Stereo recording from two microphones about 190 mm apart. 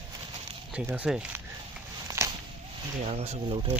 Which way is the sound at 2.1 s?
20° right (ahead or behind).